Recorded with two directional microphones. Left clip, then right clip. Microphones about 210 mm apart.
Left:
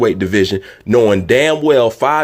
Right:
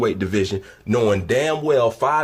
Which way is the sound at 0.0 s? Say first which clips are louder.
Left 7 dB; 30° left (ahead or behind).